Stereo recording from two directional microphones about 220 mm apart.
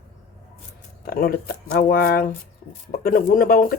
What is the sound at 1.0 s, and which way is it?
Speech, 40° left (ahead or behind).